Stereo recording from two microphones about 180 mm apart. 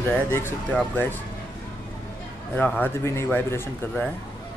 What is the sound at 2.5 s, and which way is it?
Speech, 10° left (ahead or behind).